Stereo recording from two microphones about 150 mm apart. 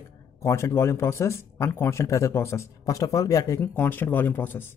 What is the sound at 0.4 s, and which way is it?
Speech, 20° left (ahead or behind).